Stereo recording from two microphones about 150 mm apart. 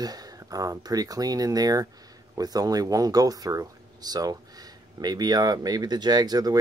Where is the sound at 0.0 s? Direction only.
25° right (ahead or behind).